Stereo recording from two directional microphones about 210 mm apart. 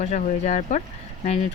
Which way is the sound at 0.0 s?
35° left (ahead or behind).